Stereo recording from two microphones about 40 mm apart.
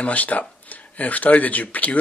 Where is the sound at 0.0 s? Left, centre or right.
Left.